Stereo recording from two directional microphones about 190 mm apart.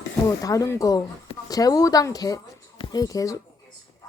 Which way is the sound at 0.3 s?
20° left (ahead or behind).